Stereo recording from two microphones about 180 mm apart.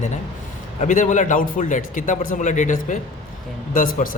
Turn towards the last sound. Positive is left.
turn(degrees=50)  # may be behind; listen again after turning